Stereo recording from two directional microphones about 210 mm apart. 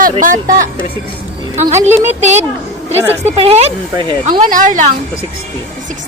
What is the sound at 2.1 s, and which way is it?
Speech, 35° right (ahead or behind).